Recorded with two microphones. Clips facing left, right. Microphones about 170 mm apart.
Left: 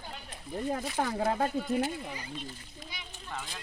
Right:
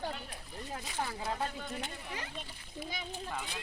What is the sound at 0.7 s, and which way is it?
Speech, 50° left (ahead or behind).